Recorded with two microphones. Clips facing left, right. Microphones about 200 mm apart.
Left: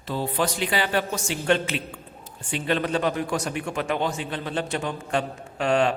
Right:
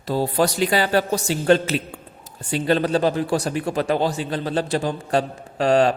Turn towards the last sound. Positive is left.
turn(degrees=-35)  # may be behind; listen again after turning